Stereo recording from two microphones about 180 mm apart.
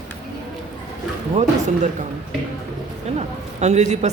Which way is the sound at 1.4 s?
40° right (ahead or behind).